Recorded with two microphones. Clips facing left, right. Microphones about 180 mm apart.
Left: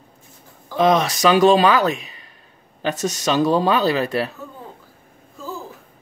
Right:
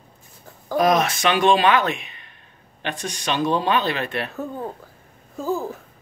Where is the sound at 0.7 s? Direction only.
30° left (ahead or behind).